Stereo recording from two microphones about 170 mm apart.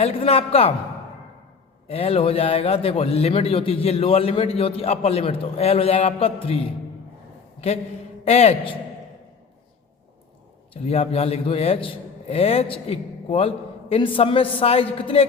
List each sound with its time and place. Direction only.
0.0 s a man's voice: 35° left (ahead or behind)
1.9 s a man's voice: 35° left (ahead or behind)
8.2 s a man's voice: 40° left (ahead or behind)
10.8 s a man's voice: 35° left (ahead or behind)